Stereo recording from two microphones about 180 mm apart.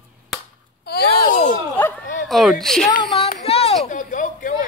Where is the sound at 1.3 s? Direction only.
45° left (ahead or behind).